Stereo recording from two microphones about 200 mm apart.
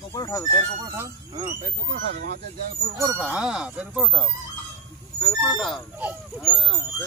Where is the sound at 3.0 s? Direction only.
15° right (ahead or behind).